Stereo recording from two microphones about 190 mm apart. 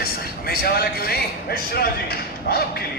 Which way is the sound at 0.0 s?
55° left (ahead or behind).